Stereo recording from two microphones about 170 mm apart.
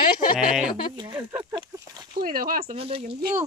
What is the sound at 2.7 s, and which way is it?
Speech, 35° right (ahead or behind).